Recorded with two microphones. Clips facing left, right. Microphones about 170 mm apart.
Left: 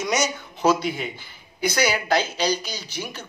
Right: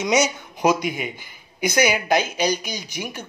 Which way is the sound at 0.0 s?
15° right (ahead or behind).